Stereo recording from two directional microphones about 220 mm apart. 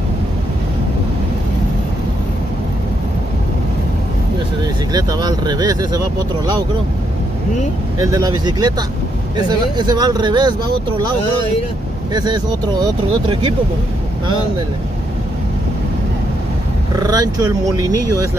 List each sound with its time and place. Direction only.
4.9 s speech: 15° right (ahead or behind)
8.0 s speech: 15° right (ahead or behind)
12.1 s speech: 20° right (ahead or behind)
16.9 s speech: 15° right (ahead or behind)